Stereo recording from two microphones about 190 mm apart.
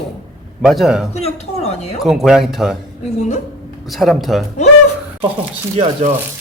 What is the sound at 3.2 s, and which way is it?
Speech, 35° left (ahead or behind).